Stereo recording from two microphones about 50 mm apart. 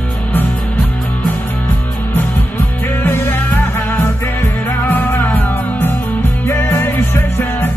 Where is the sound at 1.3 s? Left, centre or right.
Left.